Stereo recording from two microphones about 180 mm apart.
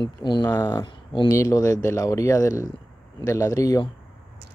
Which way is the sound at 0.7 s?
25° left (ahead or behind).